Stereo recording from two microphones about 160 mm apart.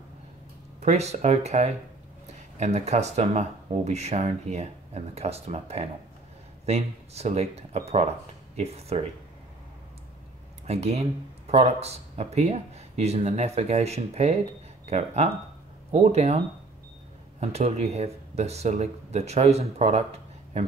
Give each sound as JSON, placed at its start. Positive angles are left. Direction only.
{"t": 0.7, "sound": "speech", "side_deg": -45}
{"t": 10.7, "sound": "speech", "side_deg": -40}
{"t": 17.4, "sound": "speech", "side_deg": -40}